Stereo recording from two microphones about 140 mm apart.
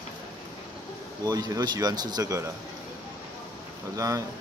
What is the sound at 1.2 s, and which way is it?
Speech, 30° right (ahead or behind).